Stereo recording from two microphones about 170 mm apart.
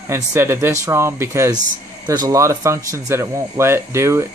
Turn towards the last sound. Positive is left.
turn(degrees=-15)  # may be behind; listen again after turning